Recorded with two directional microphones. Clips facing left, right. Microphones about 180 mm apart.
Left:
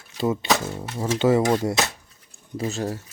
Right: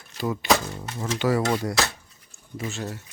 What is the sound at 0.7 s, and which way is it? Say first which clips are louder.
Speech: left 4 dB; 30° left (ahead or behind).